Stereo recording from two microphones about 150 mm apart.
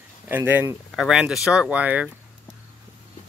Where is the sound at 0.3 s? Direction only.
15° right (ahead or behind).